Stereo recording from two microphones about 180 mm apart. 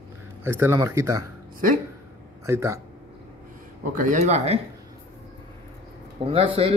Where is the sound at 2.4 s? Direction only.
15° right (ahead or behind).